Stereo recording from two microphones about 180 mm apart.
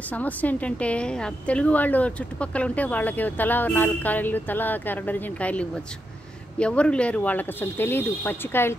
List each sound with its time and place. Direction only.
0.1 s a woman's voice: 10° left (ahead or behind)